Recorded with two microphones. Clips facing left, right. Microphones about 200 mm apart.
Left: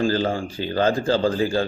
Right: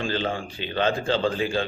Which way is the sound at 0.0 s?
40° left (ahead or behind).